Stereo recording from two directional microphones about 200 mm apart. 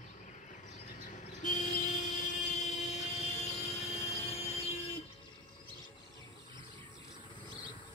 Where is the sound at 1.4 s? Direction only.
40° left (ahead or behind).